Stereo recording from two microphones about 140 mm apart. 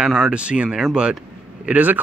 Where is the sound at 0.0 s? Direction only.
5° right (ahead or behind).